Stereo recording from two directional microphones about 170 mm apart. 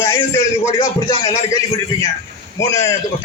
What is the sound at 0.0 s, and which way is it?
Speech, 15° left (ahead or behind).